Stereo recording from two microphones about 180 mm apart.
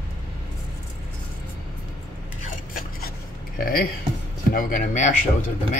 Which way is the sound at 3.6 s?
55° left (ahead or behind).